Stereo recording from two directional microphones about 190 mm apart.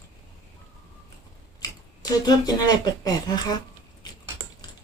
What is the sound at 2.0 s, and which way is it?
Speech, 20° left (ahead or behind).